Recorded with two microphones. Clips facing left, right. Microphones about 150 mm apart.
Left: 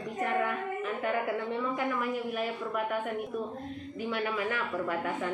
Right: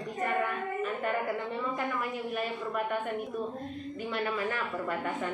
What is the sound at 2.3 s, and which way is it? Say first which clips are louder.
A woman's voice: even; 5° left (ahead or behind).